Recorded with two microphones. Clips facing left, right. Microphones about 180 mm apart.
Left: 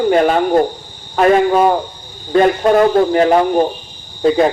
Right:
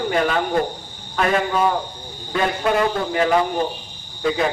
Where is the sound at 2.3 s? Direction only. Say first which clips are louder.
Left 9 dB; 40° left (ahead or behind).